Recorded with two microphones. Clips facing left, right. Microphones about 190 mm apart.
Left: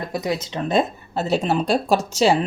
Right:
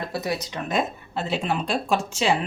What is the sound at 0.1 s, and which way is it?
Speech, 20° left (ahead or behind).